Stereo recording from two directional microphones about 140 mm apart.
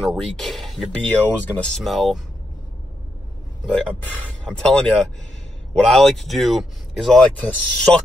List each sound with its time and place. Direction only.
0.0 s speech: centre (ahead or behind)
3.6 s speech: 5° left (ahead or behind)